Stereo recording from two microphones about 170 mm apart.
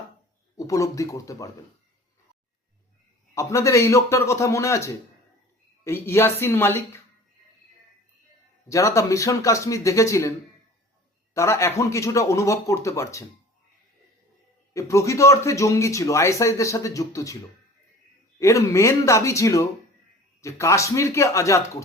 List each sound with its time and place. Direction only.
0.5 s speech: 20° left (ahead or behind)
3.3 s speech: 20° left (ahead or behind)
8.7 s speech: 20° left (ahead or behind)
11.3 s speech: 15° left (ahead or behind)
14.7 s speech: 15° left (ahead or behind)
18.3 s speech: 20° left (ahead or behind)